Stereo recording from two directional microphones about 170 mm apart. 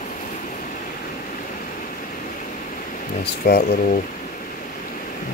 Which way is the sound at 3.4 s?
65° left (ahead or behind).